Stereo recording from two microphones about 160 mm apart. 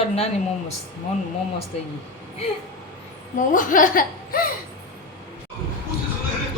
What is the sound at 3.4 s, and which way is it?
Speech, 55° left (ahead or behind).